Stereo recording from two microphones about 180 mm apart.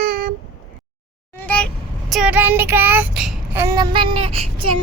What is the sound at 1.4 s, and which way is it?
Child singing, 5° left (ahead or behind).